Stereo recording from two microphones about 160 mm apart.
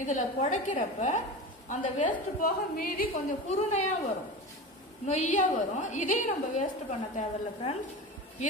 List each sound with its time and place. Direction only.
0.0 s a woman's voice: 50° left (ahead or behind); by 3.1 s 65° left (ahead or behind)
3.4 s a woman's voice: 45° left (ahead or behind)
5.0 s a woman's voice: 45° left (ahead or behind)